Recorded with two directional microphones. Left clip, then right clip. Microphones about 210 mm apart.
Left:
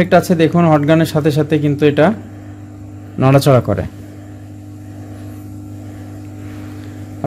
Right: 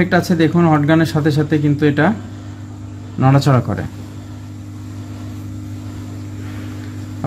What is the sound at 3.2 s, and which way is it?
Speech, 45° left (ahead or behind).